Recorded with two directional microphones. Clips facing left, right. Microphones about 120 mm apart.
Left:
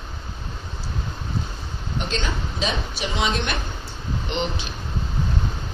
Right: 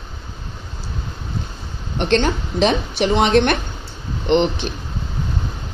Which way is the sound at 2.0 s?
65° right (ahead or behind).